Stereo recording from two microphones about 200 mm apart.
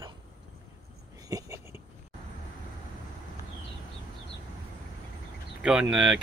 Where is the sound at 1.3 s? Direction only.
15° right (ahead or behind).